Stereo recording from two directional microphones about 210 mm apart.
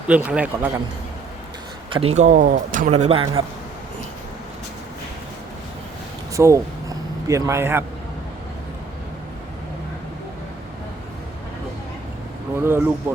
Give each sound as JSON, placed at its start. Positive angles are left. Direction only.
{"t": 0.1, "sound": "speech", "side_deg": -5}
{"t": 1.9, "sound": "speech", "side_deg": -30}
{"t": 3.0, "sound": "a man's voice", "side_deg": -25}
{"t": 6.3, "sound": "speech", "side_deg": -15}
{"t": 12.5, "sound": "speech", "side_deg": -10}